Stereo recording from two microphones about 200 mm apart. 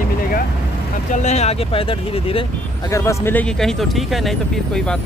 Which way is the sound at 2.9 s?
15° left (ahead or behind).